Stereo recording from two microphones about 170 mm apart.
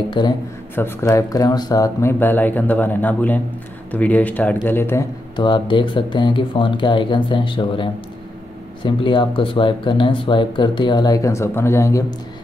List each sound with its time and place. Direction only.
0.2 s speech: 25° left (ahead or behind)
5.3 s speech: 30° left (ahead or behind)